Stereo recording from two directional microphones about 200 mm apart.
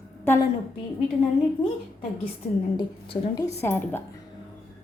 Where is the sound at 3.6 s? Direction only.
10° left (ahead or behind).